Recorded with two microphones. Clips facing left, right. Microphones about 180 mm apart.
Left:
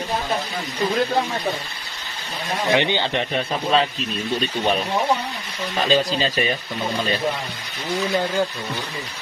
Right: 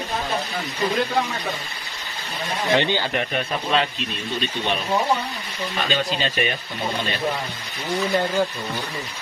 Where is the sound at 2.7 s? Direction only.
20° left (ahead or behind).